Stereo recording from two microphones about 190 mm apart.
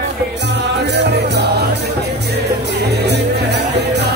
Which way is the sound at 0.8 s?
65° right (ahead or behind).